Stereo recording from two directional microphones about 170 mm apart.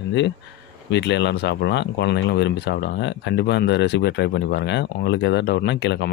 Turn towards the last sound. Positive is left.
turn(degrees=85)